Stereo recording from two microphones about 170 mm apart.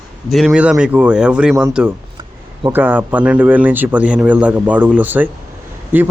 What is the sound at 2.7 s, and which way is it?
A man's voice, 10° right (ahead or behind).